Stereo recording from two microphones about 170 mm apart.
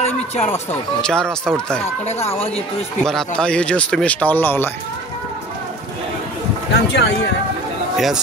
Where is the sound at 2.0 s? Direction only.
40° left (ahead or behind).